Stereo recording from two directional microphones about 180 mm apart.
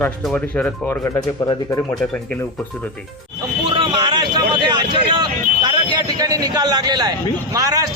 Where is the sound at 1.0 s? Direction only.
20° left (ahead or behind).